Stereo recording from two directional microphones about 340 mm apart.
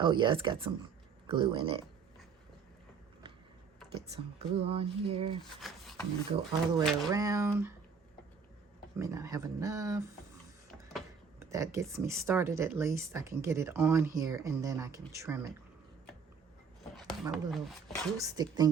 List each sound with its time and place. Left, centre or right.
0.0 s speech: centre
4.4 s speech: centre
5.5 s a sound: centre
6.3 s speech: centre
9.0 s speech: centre
17.2 s speech: centre
18.2 s speech: centre